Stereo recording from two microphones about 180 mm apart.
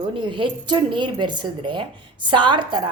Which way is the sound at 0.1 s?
25° right (ahead or behind).